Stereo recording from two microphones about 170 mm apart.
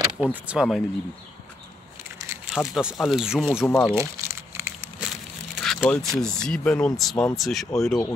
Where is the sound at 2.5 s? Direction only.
5° right (ahead or behind).